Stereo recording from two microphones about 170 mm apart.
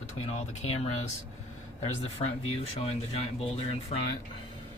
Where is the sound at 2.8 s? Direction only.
35° left (ahead or behind).